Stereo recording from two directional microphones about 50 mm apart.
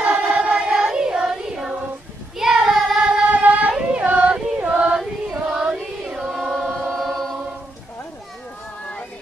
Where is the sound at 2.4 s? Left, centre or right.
Centre.